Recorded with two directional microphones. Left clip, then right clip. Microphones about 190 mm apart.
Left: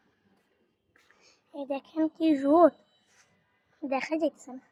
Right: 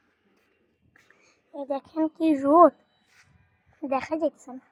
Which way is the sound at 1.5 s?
Centre (ahead or behind).